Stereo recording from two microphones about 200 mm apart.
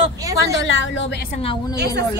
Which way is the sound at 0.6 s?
65° left (ahead or behind).